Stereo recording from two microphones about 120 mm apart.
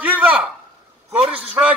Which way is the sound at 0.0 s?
10° right (ahead or behind).